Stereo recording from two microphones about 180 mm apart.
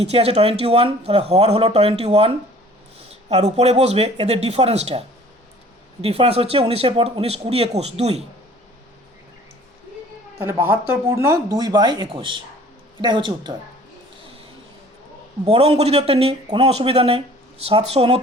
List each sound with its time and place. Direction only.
0.0 s speech: 35° right (ahead or behind)
10.4 s speech: 10° right (ahead or behind)
11.4 s speech: 20° right (ahead or behind)
15.4 s speech: 35° right (ahead or behind)